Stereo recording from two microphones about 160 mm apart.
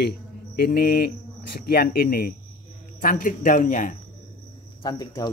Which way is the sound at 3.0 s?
60° left (ahead or behind).